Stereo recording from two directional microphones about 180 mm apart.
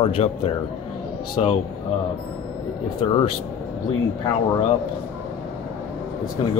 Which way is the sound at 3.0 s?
35° left (ahead or behind).